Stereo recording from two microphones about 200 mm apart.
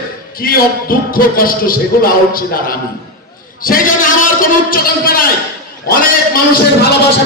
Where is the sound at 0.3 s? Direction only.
45° left (ahead or behind).